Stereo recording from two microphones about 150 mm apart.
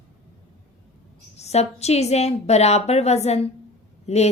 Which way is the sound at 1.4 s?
45° left (ahead or behind).